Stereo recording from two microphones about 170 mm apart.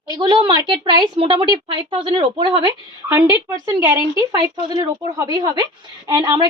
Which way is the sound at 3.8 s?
20° right (ahead or behind).